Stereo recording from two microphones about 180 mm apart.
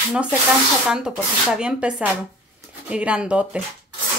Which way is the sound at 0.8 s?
5° right (ahead or behind).